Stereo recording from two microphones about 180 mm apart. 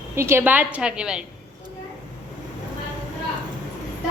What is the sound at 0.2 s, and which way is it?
A woman's voice, 15° right (ahead or behind).